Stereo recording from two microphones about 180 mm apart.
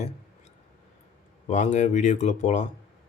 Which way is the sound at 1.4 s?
40° left (ahead or behind).